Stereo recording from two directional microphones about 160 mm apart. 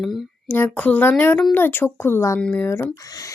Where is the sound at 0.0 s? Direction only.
Centre (ahead or behind).